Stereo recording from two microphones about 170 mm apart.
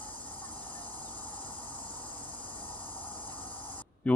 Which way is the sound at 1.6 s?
10° left (ahead or behind).